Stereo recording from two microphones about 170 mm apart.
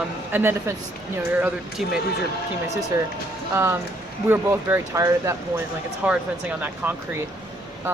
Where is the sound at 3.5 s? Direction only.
15° right (ahead or behind).